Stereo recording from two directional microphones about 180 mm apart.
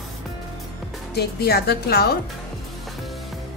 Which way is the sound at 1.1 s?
60° left (ahead or behind).